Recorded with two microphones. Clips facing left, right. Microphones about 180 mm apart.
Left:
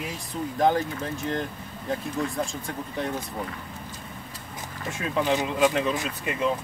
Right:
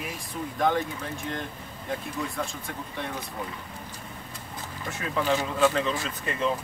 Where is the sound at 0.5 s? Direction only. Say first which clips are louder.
Left 3 dB; 30° left (ahead or behind).